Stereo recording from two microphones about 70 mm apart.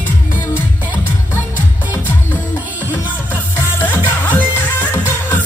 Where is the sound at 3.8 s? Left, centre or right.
Left.